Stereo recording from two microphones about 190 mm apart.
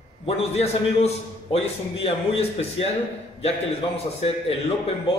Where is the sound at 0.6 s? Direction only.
35° left (ahead or behind).